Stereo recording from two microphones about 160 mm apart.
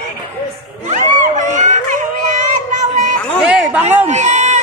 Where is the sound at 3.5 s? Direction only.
5° right (ahead or behind).